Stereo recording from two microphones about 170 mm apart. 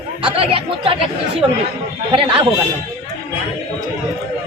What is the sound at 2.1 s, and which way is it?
Speech, 30° right (ahead or behind).